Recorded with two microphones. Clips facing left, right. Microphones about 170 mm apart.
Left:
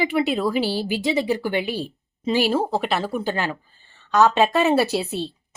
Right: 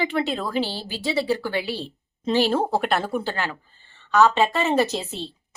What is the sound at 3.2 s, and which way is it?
Speech, 15° left (ahead or behind).